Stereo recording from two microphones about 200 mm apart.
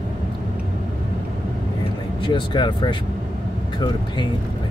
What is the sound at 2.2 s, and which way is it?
Speech, 25° left (ahead or behind).